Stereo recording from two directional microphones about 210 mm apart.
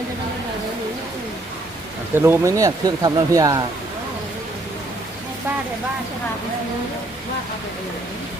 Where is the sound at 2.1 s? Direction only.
10° right (ahead or behind).